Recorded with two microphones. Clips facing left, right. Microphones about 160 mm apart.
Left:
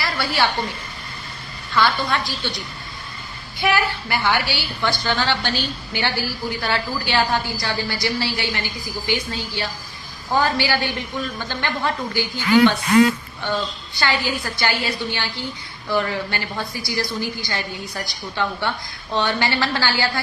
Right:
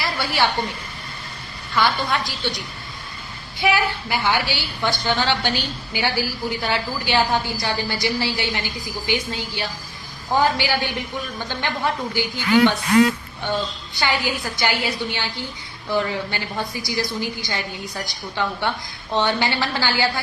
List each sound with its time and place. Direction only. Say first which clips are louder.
0.0 s a woman's voice: even; 15° right (ahead or behind)
1.7 s a woman's voice: left 1 dB; 15° right (ahead or behind)
3.6 s a woman's voice: even; 15° right (ahead or behind)
13.9 s a woman's voice: even; 15° right (ahead or behind)